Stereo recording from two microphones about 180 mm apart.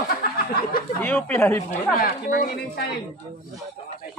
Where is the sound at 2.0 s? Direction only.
55° left (ahead or behind).